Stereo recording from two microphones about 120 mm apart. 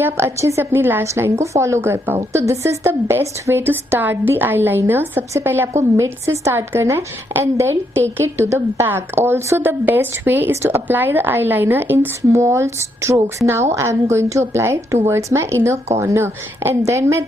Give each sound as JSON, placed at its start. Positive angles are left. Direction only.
{"t": 0.0, "sound": "a woman's voice", "side_deg": -25}